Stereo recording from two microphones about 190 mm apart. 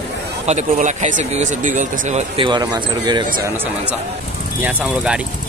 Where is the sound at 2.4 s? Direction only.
20° right (ahead or behind).